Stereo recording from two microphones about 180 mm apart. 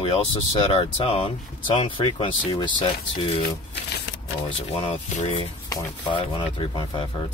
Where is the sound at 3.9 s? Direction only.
90° left.